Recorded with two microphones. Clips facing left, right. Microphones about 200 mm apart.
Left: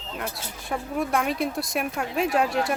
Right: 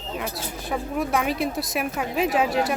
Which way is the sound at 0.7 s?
Centre (ahead or behind).